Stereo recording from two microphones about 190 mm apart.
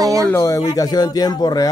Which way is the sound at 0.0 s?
15° right (ahead or behind).